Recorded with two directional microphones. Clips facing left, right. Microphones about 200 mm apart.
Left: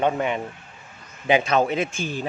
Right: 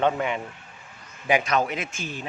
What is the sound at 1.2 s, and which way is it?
A man's voice, 25° left (ahead or behind).